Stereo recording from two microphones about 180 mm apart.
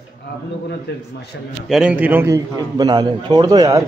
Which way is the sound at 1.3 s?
90° left.